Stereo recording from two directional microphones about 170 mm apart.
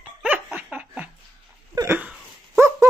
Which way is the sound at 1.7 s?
15° right (ahead or behind).